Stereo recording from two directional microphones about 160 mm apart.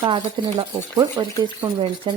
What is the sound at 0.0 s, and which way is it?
Speech, 25° right (ahead or behind).